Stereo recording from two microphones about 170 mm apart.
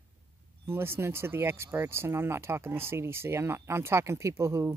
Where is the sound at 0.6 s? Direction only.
15° right (ahead or behind).